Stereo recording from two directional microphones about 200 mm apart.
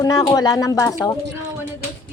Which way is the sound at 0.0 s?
20° left (ahead or behind).